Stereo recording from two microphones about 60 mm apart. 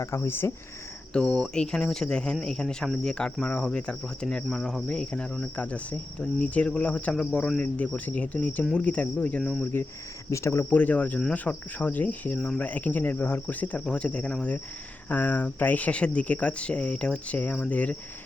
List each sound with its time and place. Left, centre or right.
0.0 s speech: left
1.1 s speech: centre
5.5 s speech: left
10.2 s speech: left
10.7 s speech: left